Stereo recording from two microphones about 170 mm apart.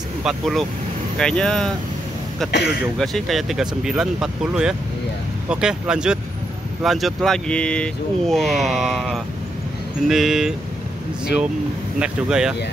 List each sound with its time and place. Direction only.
0.2 s speech: centre (ahead or behind)
2.5 s speech: 75° left (ahead or behind)
3.0 s speech: centre (ahead or behind)
12.0 s speech: 5° right (ahead or behind)